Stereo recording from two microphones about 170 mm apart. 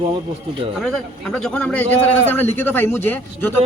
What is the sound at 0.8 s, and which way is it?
Speech, 5° left (ahead or behind).